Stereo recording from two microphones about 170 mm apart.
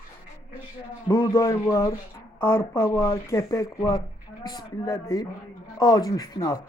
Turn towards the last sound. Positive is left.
turn(degrees=20)  # may be behind; listen again after turning